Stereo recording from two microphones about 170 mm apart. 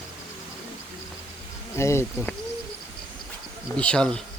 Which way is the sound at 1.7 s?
15° left (ahead or behind).